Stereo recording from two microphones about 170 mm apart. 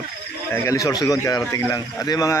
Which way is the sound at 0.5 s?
15° left (ahead or behind).